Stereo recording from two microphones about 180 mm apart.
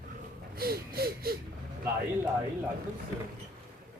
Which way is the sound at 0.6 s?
60° right (ahead or behind).